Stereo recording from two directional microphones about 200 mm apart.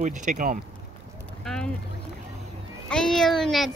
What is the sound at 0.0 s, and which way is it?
Speech, 40° right (ahead or behind).